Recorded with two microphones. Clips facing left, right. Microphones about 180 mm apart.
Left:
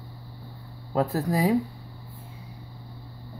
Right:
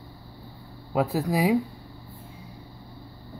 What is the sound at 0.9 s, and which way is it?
Speech, 10° right (ahead or behind).